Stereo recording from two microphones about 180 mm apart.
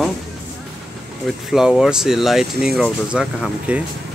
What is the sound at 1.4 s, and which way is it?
Speech, 5° right (ahead or behind).